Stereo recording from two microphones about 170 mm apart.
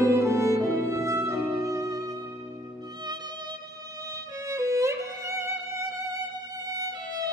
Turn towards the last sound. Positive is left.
turn(degrees=-15)  # may be behind; listen again after turning